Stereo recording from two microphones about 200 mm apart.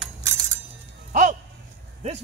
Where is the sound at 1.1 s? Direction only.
40° right (ahead or behind).